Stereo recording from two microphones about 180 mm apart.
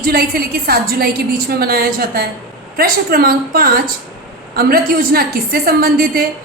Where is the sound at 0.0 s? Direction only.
55° right (ahead or behind).